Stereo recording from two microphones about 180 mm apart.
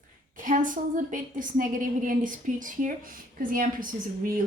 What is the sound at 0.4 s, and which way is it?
A woman's voice, 45° right (ahead or behind).